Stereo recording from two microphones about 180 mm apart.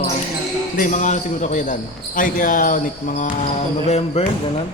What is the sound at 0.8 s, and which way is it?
Speech, 45° left (ahead or behind).